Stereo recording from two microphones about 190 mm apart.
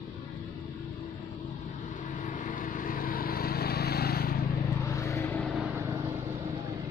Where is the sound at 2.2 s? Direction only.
45° left (ahead or behind).